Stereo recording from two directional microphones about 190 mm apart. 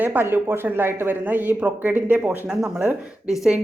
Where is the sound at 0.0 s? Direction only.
10° right (ahead or behind).